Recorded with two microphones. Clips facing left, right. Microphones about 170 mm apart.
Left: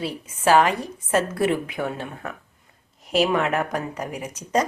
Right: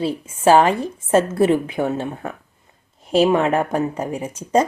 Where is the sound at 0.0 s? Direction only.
30° right (ahead or behind).